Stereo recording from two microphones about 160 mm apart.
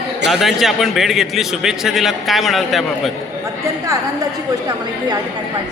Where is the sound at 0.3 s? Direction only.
Centre (ahead or behind).